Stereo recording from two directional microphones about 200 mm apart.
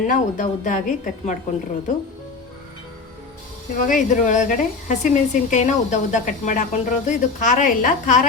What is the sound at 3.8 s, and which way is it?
Speech, 40° left (ahead or behind).